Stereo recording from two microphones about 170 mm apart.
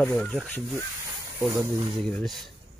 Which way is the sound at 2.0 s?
Centre (ahead or behind).